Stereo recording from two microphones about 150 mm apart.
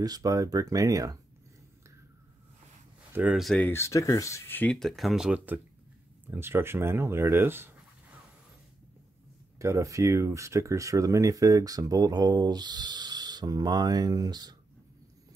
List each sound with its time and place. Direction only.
0.0 s speech: 25° right (ahead or behind)
3.1 s speech: 10° right (ahead or behind)
3.5 s speech: 15° left (ahead or behind); by 8.2 s 15° right (ahead or behind)
9.6 s speech: 20° right (ahead or behind)